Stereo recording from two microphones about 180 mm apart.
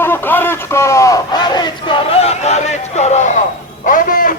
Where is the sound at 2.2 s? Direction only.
35° left (ahead or behind).